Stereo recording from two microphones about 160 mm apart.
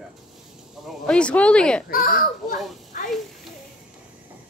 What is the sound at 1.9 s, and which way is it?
Speech, 65° left (ahead or behind).